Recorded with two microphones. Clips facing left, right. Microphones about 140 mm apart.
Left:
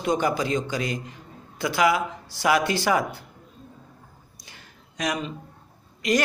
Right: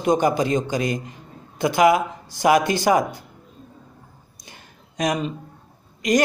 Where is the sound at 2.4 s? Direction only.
45° right (ahead or behind).